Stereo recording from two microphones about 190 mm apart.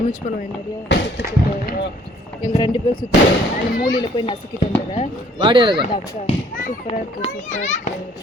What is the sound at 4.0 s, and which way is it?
Speech, 25° left (ahead or behind).